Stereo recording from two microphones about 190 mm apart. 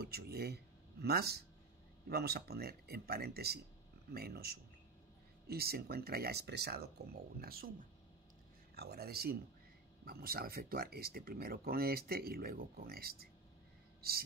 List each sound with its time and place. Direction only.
0.0 s speech: 55° right (ahead or behind)
8.7 s speech: 55° right (ahead or behind)
14.0 s gasp: 55° right (ahead or behind)